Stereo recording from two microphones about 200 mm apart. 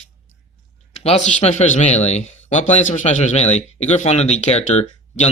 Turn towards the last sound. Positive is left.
turn(degrees=35)  # may be behind; listen again after turning